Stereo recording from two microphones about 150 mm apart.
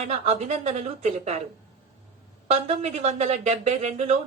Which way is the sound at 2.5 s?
45° right (ahead or behind).